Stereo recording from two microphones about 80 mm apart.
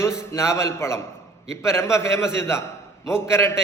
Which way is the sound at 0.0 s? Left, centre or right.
Left.